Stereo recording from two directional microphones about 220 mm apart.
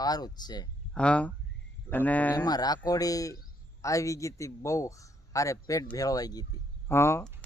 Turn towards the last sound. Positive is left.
turn(degrees=10)  # may be behind; listen again after turning